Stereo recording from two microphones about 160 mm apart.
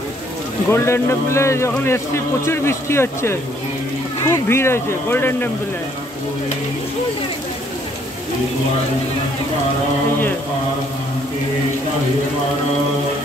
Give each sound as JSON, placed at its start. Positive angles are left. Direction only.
{"t": 0.7, "sound": "speech", "side_deg": 15}